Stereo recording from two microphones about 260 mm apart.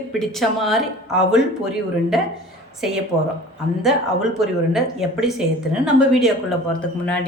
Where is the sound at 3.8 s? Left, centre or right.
Centre.